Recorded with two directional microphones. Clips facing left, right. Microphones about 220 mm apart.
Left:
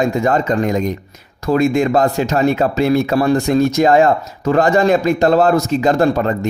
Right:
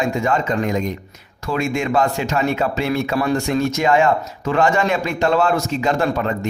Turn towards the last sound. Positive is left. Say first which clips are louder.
# left 5 dB
turn(degrees=35)  # may be behind; listen again after turning